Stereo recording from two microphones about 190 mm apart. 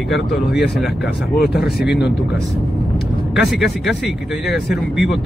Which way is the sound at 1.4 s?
55° left (ahead or behind).